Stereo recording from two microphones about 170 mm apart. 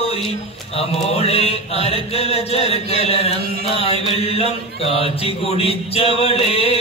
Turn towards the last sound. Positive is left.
turn(degrees=35)  # may be behind; listen again after turning